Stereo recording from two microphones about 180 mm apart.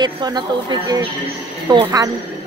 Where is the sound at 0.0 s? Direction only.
25° right (ahead or behind).